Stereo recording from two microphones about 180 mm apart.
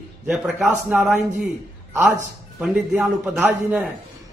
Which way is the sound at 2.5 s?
5° right (ahead or behind).